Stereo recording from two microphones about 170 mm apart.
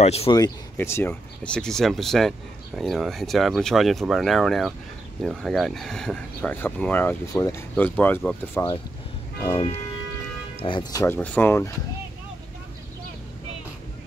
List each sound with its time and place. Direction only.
0.0 s speech: 35° left (ahead or behind)
0.7 s speech: 15° left (ahead or behind)
10.6 s speech: 25° left (ahead or behind)